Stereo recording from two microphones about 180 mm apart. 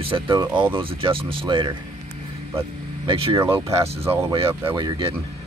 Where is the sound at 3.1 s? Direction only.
30° right (ahead or behind).